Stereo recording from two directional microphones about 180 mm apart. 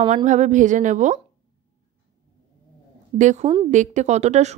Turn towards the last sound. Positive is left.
turn(degrees=-40)  # may be behind; listen again after turning